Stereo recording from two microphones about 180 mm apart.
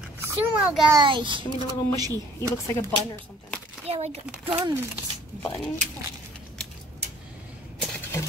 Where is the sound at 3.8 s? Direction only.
35° right (ahead or behind).